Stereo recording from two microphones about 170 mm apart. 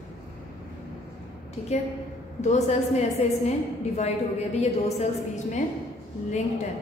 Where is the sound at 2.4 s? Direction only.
40° left (ahead or behind).